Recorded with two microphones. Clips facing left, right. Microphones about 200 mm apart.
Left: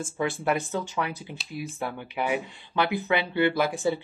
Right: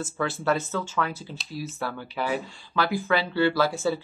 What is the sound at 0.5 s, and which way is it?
Speech, 15° left (ahead or behind).